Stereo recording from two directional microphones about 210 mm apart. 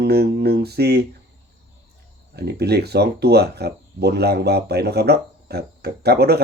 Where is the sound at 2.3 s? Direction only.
50° right (ahead or behind).